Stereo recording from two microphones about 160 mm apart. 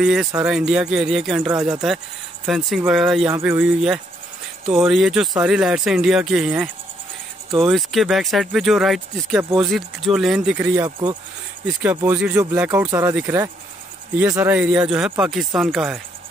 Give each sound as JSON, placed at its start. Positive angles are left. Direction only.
{"t": 0.0, "sound": "speech", "side_deg": -5}
{"t": 7.6, "sound": "speech", "side_deg": 0}
{"t": 9.4, "sound": "speech", "side_deg": -20}
{"t": 9.7, "sound": "speech", "side_deg": 0}